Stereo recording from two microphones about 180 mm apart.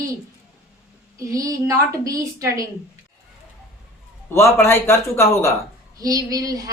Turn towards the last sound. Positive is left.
turn(degrees=-20)  # may be behind; listen again after turning